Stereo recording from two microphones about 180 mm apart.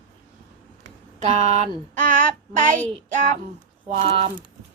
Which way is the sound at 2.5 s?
45° right (ahead or behind).